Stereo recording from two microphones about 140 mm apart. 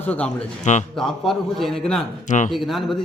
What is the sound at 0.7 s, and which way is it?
Speech, 55° left (ahead or behind).